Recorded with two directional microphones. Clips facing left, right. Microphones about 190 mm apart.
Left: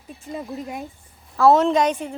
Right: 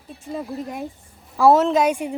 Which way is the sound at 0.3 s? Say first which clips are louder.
Right 2 dB; 5° left (ahead or behind).